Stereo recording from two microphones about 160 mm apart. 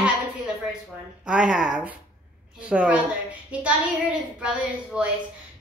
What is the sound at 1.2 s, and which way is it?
A child's voice, 5° right (ahead or behind).